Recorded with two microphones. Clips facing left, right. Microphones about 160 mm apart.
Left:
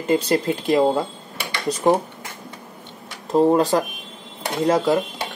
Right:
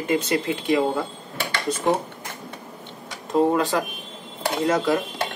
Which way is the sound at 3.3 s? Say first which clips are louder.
Left 4 dB; 40° left (ahead or behind).